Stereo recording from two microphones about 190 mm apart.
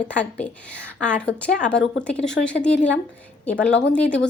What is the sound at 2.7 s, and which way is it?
Speech, 70° left (ahead or behind).